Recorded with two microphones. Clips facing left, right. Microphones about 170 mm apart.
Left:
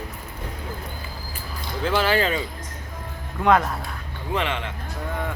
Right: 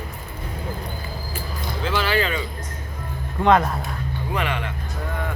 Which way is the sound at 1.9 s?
45° left (ahead or behind).